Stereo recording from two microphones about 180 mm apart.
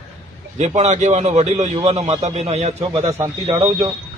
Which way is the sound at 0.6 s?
40° right (ahead or behind).